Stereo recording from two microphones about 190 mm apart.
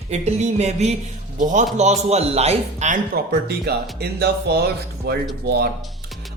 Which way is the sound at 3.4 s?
55° right (ahead or behind).